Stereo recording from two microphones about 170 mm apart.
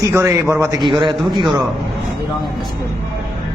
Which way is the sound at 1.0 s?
25° right (ahead or behind).